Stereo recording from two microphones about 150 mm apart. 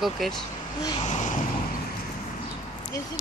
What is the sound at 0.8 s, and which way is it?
Speech, 25° left (ahead or behind).